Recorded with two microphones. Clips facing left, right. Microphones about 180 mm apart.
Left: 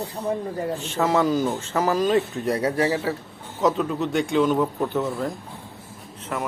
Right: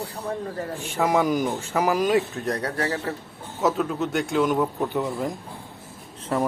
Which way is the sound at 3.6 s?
5° right (ahead or behind).